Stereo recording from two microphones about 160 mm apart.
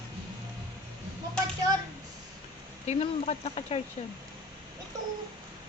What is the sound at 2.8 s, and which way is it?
Speech, 40° left (ahead or behind).